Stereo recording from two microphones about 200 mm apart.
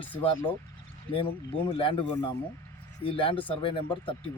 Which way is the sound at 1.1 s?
25° left (ahead or behind).